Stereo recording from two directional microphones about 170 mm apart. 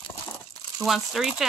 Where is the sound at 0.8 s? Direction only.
Centre (ahead or behind).